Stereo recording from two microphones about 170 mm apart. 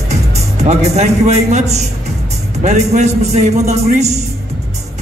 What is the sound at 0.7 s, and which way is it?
A man's voice, 40° right (ahead or behind).